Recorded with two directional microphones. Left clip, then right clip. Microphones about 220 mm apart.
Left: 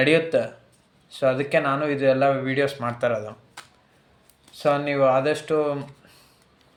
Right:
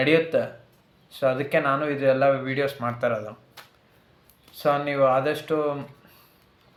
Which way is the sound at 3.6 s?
10° left (ahead or behind).